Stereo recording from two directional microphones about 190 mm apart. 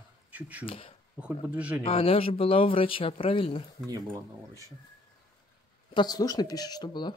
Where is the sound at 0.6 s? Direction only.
30° left (ahead or behind).